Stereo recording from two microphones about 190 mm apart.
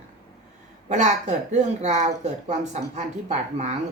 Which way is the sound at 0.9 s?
40° right (ahead or behind).